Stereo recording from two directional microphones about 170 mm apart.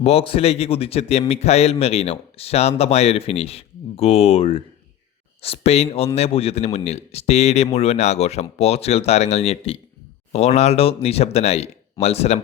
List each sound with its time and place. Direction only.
0.0 s speech: 35° left (ahead or behind)